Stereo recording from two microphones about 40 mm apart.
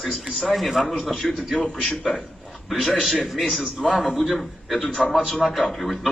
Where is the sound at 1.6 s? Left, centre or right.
Left.